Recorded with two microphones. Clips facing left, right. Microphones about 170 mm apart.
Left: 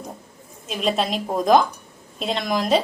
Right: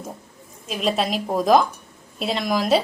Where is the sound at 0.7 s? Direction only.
Centre (ahead or behind).